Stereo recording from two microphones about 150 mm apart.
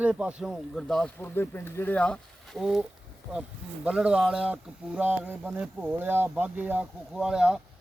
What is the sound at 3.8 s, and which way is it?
Speech, 5° right (ahead or behind).